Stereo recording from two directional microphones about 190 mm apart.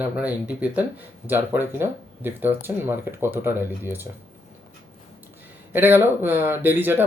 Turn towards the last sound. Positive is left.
turn(degrees=-10)  # may be behind; listen again after turning